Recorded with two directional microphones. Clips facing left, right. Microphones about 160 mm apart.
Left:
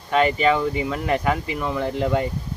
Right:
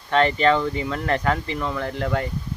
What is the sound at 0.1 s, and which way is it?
Speech, 10° left (ahead or behind).